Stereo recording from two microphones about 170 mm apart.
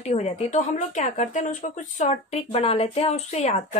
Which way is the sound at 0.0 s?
40° left (ahead or behind).